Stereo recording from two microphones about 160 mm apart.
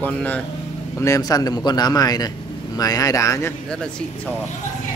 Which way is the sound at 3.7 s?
5° left (ahead or behind).